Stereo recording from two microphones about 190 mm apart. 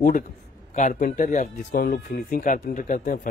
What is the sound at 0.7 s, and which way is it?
Speech, 45° left (ahead or behind).